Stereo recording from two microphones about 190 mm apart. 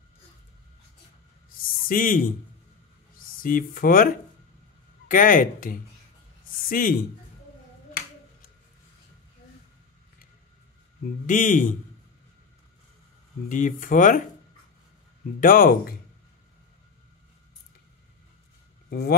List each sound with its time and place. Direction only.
1.8 s speech: 50° left (ahead or behind)
3.3 s speech: 50° left (ahead or behind)
11.2 s speech: 45° left (ahead or behind)
13.5 s speech: 45° left (ahead or behind)
15.4 s speech: 50° left (ahead or behind)
18.9 s speech: 55° left (ahead or behind)